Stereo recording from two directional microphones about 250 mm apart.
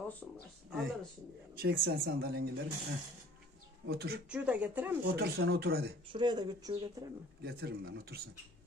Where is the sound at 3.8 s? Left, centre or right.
Right.